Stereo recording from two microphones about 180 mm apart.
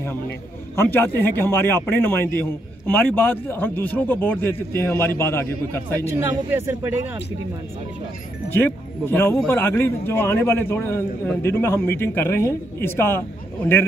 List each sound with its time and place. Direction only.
0.7 s a man's voice: 10° left (ahead or behind)
5.9 s a man's voice: 15° right (ahead or behind)
8.5 s a man's voice: 10° left (ahead or behind)